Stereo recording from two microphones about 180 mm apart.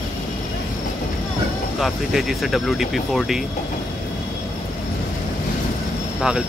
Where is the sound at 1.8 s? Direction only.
Centre (ahead or behind).